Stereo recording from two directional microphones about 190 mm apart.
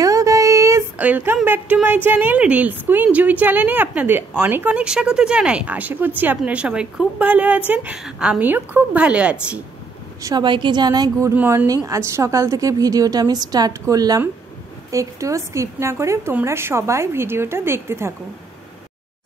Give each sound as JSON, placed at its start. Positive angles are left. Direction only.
{"t": 0.0, "sound": "a sound", "side_deg": -15}
{"t": 2.0, "sound": "speech", "side_deg": -10}
{"t": 10.2, "sound": "a woman's voice", "side_deg": -20}